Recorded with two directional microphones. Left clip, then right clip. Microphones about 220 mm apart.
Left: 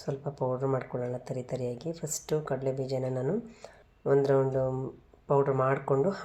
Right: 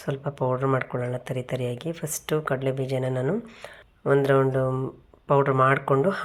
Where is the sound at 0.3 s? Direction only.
30° right (ahead or behind).